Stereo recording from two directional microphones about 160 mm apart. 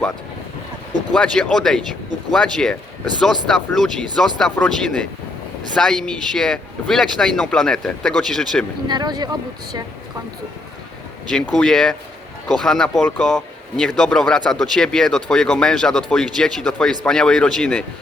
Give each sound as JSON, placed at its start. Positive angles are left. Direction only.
{"t": 1.1, "sound": "speech", "side_deg": 5}
{"t": 8.9, "sound": "speech", "side_deg": -25}
{"t": 11.3, "sound": "speech", "side_deg": 5}